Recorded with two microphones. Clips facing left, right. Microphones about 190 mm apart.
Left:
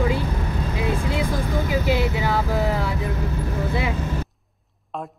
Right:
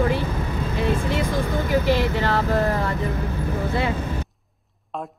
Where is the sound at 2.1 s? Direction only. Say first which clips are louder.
Right 1 dB; 10° left (ahead or behind).